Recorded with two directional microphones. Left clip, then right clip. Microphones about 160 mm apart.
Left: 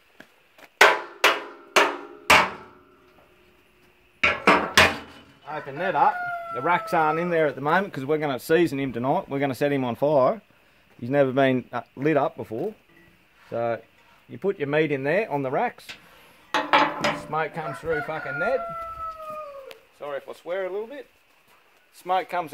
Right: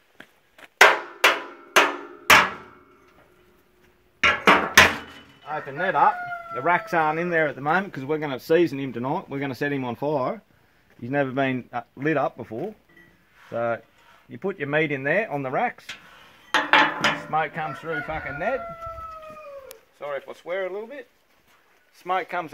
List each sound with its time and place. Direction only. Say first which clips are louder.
0.7 s a sound: right 1 dB; 5° left (ahead or behind)
4.2 s a sound: right 2 dB; 5° right (ahead or behind)
5.5 s speech: right 2 dB; 10° left (ahead or behind)
6.5 s speech: right 1 dB; 45° left (ahead or behind); by 10.4 s 70° left (ahead or behind)
11.1 s speech: left 4 dB; 80° left; by 15.7 s 55° left (ahead or behind)
17.3 s speech: right 2 dB; 55° left (ahead or behind)
20.0 s speech: right 1 dB; 40° left (ahead or behind)
22.0 s speech: left 1 dB; 55° left (ahead or behind)